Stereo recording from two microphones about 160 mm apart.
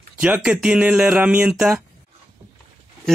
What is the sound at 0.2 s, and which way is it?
Speech, 10° right (ahead or behind).